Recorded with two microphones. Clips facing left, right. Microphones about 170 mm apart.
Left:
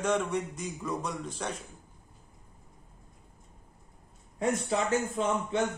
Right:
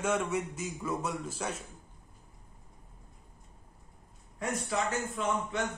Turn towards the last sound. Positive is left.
turn(degrees=25)  # may be behind; listen again after turning